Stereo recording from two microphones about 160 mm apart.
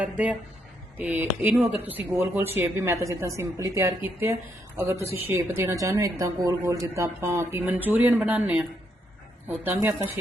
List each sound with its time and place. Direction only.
0.0 s speech: 10° right (ahead or behind)